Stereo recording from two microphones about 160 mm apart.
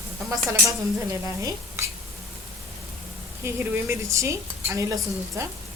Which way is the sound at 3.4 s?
15° right (ahead or behind).